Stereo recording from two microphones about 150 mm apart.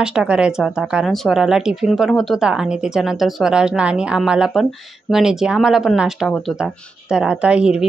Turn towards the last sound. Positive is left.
turn(degrees=-5)  # may be behind; listen again after turning